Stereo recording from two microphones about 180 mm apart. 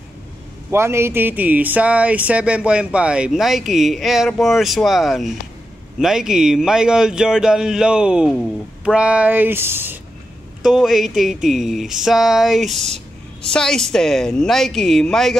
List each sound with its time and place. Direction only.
0.7 s speech: 15° right (ahead or behind)
10.6 s speech: centre (ahead or behind)